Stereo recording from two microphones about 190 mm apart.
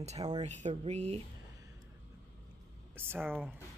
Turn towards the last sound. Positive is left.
turn(degrees=-10)  # may be behind; listen again after turning